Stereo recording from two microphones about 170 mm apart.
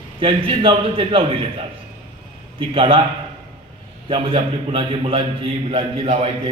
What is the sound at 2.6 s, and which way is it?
Speech, 30° right (ahead or behind).